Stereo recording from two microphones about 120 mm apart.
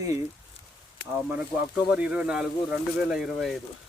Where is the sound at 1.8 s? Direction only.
10° right (ahead or behind).